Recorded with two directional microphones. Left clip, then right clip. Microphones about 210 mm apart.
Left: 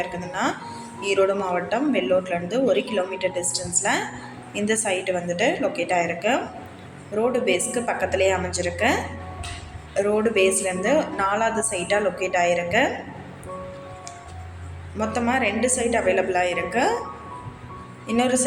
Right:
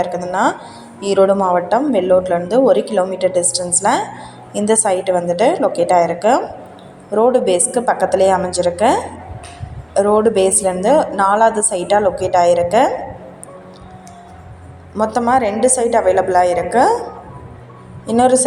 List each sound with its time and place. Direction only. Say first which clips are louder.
1.0 s a woman's voice: right 8 dB; 20° right (ahead or behind)
14.9 s a woman's voice: right 9 dB; 20° right (ahead or behind)
18.0 s a woman's voice: right 10 dB; 25° right (ahead or behind)